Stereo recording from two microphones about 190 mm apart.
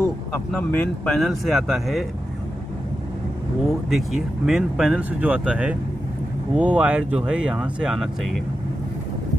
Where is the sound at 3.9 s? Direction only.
Centre (ahead or behind).